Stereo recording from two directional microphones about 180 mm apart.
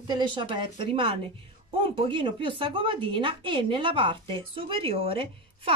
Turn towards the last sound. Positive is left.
turn(degrees=-30)  # may be behind; listen again after turning